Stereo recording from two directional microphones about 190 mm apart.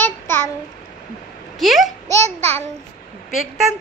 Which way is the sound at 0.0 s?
10° left (ahead or behind).